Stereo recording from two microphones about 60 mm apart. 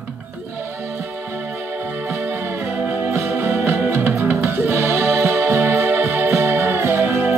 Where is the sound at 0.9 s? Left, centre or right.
Right.